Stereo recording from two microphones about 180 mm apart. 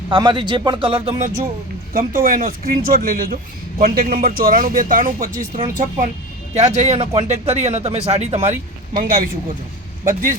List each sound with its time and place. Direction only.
0.1 s speech: 25° right (ahead or behind)
1.9 s speech: 50° right (ahead or behind)